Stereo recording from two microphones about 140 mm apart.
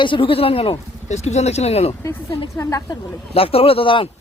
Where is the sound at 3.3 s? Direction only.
45° left (ahead or behind).